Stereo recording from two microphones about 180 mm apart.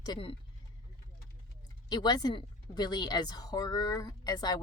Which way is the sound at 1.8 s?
20° left (ahead or behind).